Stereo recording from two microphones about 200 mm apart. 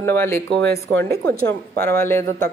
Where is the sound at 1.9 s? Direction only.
15° left (ahead or behind).